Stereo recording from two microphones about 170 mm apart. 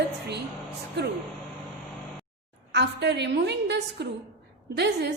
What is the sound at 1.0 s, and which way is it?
Speech, 80° right.